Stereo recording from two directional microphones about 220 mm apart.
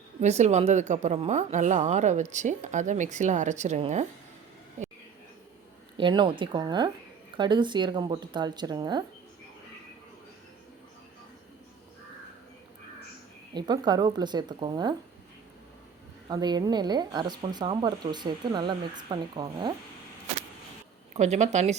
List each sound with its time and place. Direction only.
0.2 s a woman's voice: 30° right (ahead or behind)
6.0 s speech: 20° right (ahead or behind)
13.5 s speech: 20° right (ahead or behind)
16.3 s speech: 20° right (ahead or behind)
21.1 s a woman's voice: 30° right (ahead or behind)